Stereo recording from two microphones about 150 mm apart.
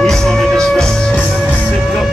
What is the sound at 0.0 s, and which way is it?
Music, 5° left (ahead or behind).